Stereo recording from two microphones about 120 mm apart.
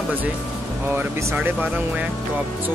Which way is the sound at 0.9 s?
15° right (ahead or behind).